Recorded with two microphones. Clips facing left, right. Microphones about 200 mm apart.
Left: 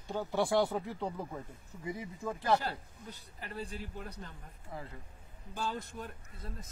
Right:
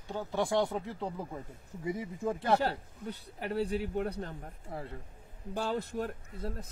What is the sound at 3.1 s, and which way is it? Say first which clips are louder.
A man's voice: right 10 dB; 65° right (ahead or behind).